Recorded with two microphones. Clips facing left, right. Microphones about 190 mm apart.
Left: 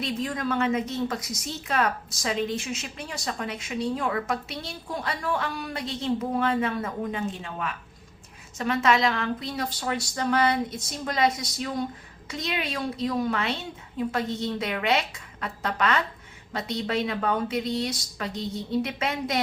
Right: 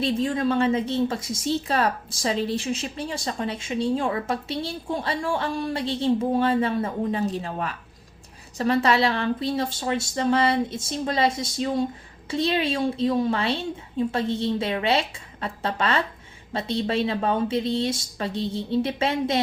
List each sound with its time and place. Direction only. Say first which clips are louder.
0.0 s a woman's voice: right 6 dB; 30° right (ahead or behind)